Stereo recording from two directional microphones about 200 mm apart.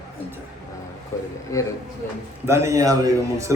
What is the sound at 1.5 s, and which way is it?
Speech, 15° left (ahead or behind).